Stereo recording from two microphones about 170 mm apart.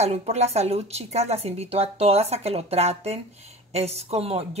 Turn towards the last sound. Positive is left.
turn(degrees=-35)  # may be behind; listen again after turning